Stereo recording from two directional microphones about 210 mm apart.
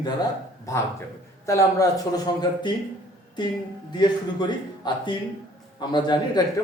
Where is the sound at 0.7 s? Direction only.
15° left (ahead or behind).